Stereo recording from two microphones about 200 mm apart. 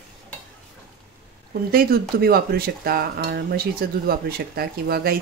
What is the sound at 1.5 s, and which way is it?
Speech, 50° right (ahead or behind).